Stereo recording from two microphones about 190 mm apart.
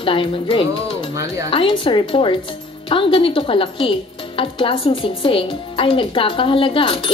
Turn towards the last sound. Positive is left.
turn(degrees=30)  # may be behind; listen again after turning